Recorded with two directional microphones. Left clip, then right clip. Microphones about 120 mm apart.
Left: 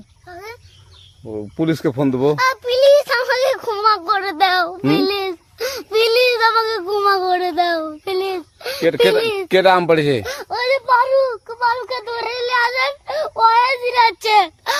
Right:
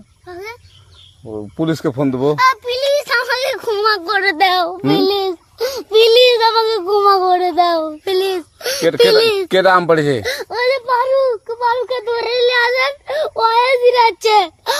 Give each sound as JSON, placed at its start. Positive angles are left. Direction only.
{"t": 0.3, "sound": "fowl", "side_deg": 0}
{"t": 1.3, "sound": "a child's voice", "side_deg": 5}
{"t": 4.4, "sound": "speech", "side_deg": 0}
{"t": 4.8, "sound": "a child's voice", "side_deg": 20}
{"t": 6.5, "sound": "child singing", "side_deg": 15}
{"t": 9.2, "sound": "speech", "side_deg": -35}
{"t": 9.5, "sound": "speech", "side_deg": 0}
{"t": 10.2, "sound": "a sound", "side_deg": -10}
{"t": 10.8, "sound": "child singing", "side_deg": 15}
{"t": 12.2, "sound": "speech", "side_deg": 0}
{"t": 13.7, "sound": "child singing", "side_deg": 15}